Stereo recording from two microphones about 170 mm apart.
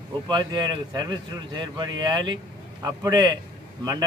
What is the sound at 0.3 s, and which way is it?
Speech, 25° right (ahead or behind).